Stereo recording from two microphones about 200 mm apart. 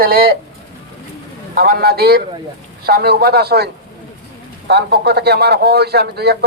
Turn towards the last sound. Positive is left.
turn(degrees=-55)  # may be behind; listen again after turning